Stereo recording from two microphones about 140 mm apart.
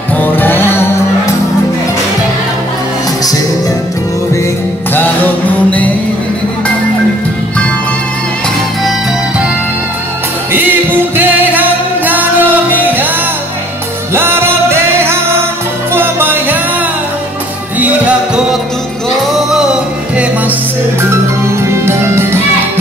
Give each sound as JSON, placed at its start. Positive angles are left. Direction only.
{"t": 0.2, "sound": "music", "side_deg": 15}
{"t": 4.9, "sound": "music", "side_deg": 15}
{"t": 11.1, "sound": "music", "side_deg": -15}
{"t": 14.1, "sound": "music", "side_deg": -15}
{"t": 17.7, "sound": "music", "side_deg": -10}
{"t": 21.5, "sound": "music", "side_deg": -20}